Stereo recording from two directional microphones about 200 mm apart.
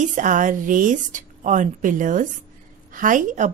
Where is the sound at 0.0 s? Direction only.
40° right (ahead or behind).